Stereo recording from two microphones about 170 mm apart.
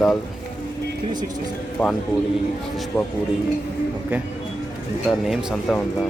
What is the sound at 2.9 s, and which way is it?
Speech, 15° left (ahead or behind).